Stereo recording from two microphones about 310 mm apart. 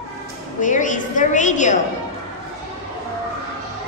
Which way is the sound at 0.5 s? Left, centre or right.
Left.